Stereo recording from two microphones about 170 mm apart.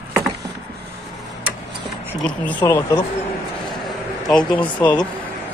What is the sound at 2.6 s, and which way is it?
Speech, 20° left (ahead or behind).